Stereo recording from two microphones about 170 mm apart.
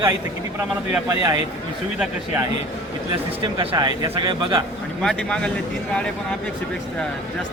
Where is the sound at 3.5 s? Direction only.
25° right (ahead or behind).